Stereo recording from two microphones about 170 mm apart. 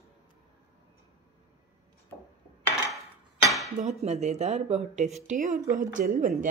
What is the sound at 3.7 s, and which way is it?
A woman's voice, 40° right (ahead or behind).